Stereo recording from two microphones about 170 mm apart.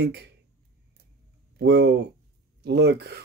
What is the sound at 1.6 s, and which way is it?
Speech, 85° right.